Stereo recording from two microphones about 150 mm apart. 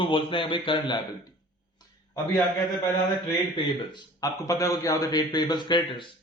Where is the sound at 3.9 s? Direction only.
25° left (ahead or behind).